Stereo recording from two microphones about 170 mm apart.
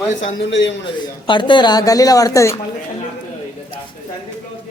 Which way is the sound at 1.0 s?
25° left (ahead or behind).